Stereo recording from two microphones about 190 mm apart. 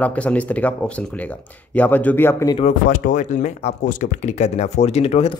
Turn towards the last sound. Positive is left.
turn(degrees=35)  # may be behind; listen again after turning